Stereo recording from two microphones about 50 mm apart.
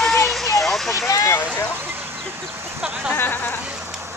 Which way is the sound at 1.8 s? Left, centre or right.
Right.